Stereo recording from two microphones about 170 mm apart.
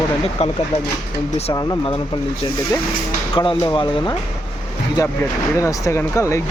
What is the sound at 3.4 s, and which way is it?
Speech, 30° left (ahead or behind).